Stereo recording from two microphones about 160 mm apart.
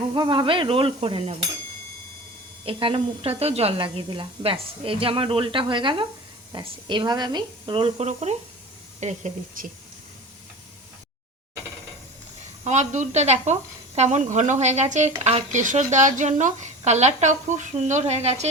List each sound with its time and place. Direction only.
0.1 s speech: 30° right (ahead or behind)
2.6 s speech: 35° right (ahead or behind)
12.6 s speech: 45° right (ahead or behind)